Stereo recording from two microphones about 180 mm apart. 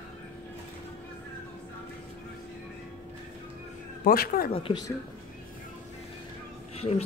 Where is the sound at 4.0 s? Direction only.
55° left (ahead or behind).